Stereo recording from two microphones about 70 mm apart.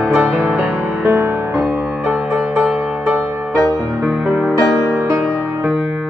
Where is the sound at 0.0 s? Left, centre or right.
Centre.